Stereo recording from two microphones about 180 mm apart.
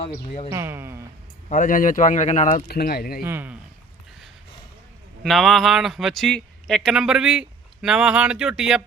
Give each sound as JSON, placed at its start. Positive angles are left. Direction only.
{"t": 0.0, "sound": "speech", "side_deg": 40}
{"t": 0.5, "sound": "speech", "side_deg": -15}
{"t": 1.5, "sound": "speech", "side_deg": 45}
{"t": 2.6, "sound": "speech", "side_deg": 60}
{"t": 3.2, "sound": "speech", "side_deg": -10}
{"t": 5.2, "sound": "speech", "side_deg": 0}